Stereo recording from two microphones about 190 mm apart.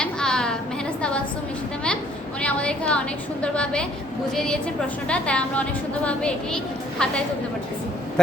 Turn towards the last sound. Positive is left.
turn(degrees=5)  # may be behind; listen again after turning